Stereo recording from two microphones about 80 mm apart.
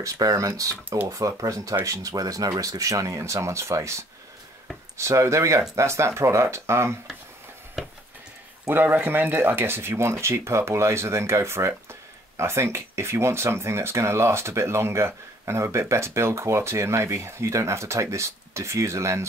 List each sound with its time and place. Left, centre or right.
0.0 s speech: right
7.8 s a sound: centre
8.6 s speech: right